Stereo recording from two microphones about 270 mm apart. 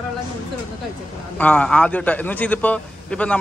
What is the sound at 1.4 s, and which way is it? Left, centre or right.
A man's voice, centre.